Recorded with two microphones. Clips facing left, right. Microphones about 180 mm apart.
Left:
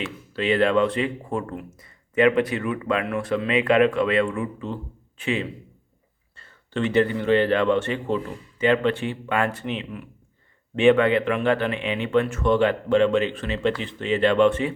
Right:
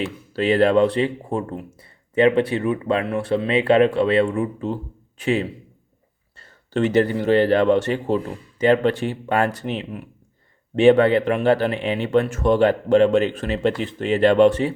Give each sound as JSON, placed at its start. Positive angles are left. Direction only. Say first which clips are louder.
{"t": 0.0, "sound": "a man's voice", "louder": "right 4 dB", "side_deg": -40}